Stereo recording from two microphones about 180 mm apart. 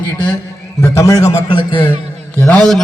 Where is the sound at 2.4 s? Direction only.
10° left (ahead or behind).